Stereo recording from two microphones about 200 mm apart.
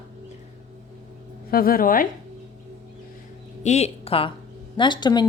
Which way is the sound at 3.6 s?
35° left (ahead or behind).